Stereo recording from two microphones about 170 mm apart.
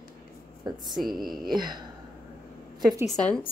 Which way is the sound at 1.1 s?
Centre (ahead or behind).